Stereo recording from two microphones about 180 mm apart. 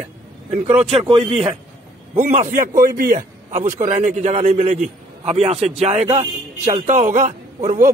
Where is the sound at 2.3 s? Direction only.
45° right (ahead or behind).